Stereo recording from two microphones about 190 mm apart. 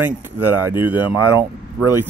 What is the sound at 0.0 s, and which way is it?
Speech, 10° right (ahead or behind).